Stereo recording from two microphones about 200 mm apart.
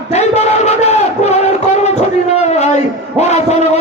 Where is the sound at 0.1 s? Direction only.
35° left (ahead or behind).